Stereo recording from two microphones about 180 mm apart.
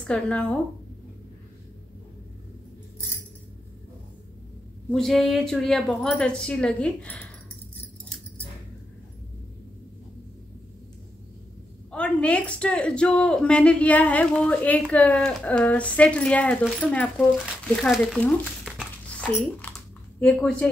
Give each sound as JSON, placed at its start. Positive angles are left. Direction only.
{"t": 0.0, "sound": "speech", "side_deg": 5}
{"t": 4.9, "sound": "speech", "side_deg": 0}
{"t": 11.9, "sound": "a woman's voice", "side_deg": 5}